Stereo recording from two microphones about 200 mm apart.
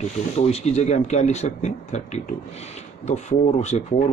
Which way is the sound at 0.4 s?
30° left (ahead or behind).